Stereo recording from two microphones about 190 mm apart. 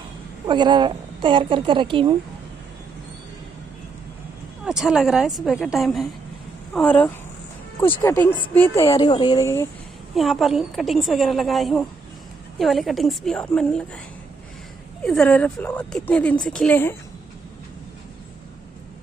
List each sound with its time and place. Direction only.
0.5 s a woman's voice: 25° right (ahead or behind)
4.6 s a woman's voice: centre (ahead or behind); by 9.7 s 15° left (ahead or behind)
10.1 s a woman's voice: centre (ahead or behind)
15.0 s a woman's voice: 5° left (ahead or behind)